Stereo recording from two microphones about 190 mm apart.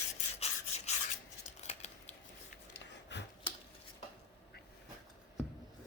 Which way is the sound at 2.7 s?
70° left (ahead or behind).